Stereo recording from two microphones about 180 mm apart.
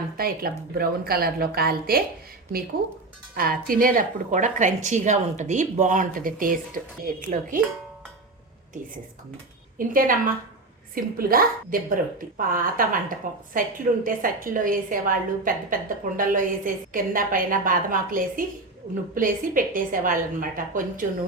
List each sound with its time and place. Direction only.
0.2 s a woman's voice: 55° right (ahead or behind)
3.3 s a woman's voice: 55° right (ahead or behind)
9.7 s a woman's voice: 50° right (ahead or behind)